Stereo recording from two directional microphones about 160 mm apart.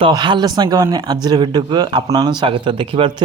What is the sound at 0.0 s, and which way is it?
A man's voice, 30° right (ahead or behind).